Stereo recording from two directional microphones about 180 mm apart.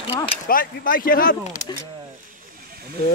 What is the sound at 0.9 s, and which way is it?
Speech, 50° left (ahead or behind).